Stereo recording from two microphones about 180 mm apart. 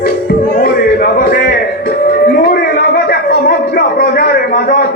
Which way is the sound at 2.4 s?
55° left (ahead or behind).